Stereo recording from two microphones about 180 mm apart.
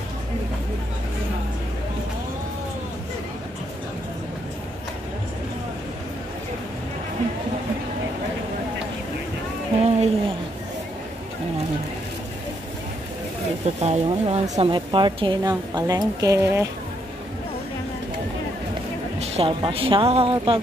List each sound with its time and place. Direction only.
9.8 s a sound: 35° right (ahead or behind)
13.7 s a woman's voice: 35° right (ahead or behind); by 16.6 s 15° right (ahead or behind)
19.1 s speech: 30° right (ahead or behind)